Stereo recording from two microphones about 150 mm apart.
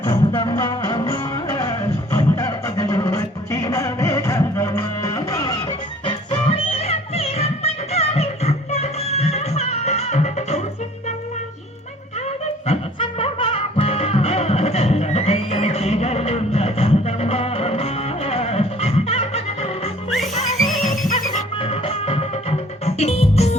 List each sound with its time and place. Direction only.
0.0 s music: 30° left (ahead or behind); by 10.6 s 50° left (ahead or behind)
12.6 s music: 40° left (ahead or behind)
20.1 s music: centre (ahead or behind)
21.6 s music: 40° left (ahead or behind)